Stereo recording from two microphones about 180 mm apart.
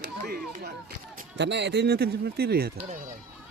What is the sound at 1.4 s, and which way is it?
Speech, 75° right (ahead or behind).